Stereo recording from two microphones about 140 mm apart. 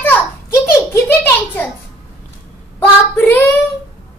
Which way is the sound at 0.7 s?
15° left (ahead or behind).